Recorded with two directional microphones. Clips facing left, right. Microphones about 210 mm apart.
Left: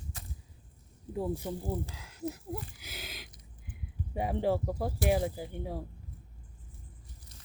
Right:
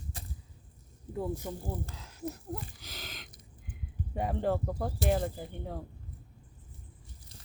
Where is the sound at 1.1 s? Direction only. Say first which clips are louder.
Left 1 dB; 10° left (ahead or behind).